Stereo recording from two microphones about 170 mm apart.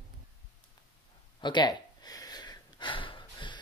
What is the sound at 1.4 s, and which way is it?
Speech, 25° left (ahead or behind).